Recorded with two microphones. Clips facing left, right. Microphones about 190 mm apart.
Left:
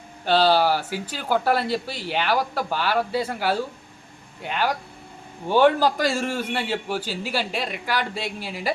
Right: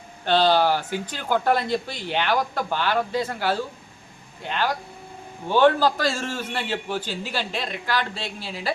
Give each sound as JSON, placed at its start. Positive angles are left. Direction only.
{"t": 0.3, "sound": "a man's voice", "side_deg": 5}